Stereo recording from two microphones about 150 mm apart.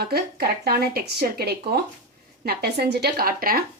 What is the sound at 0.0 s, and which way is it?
Speech, 90° right.